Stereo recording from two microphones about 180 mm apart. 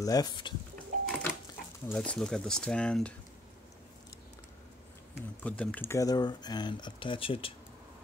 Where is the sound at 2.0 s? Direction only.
5° left (ahead or behind).